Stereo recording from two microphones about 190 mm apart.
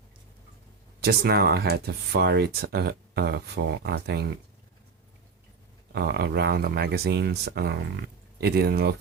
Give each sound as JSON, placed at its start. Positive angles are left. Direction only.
{"t": 1.0, "sound": "speech", "side_deg": -55}
{"t": 5.9, "sound": "speech", "side_deg": -60}